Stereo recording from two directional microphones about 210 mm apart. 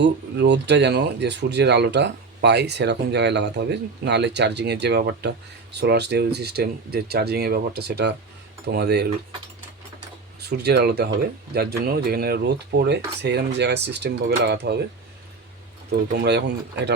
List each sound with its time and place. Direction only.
0.0 s speech: 55° right (ahead or behind)
10.6 s speech: 50° right (ahead or behind)
15.9 s speech: 50° right (ahead or behind)